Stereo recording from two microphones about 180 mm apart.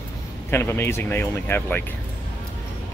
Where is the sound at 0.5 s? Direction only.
15° left (ahead or behind).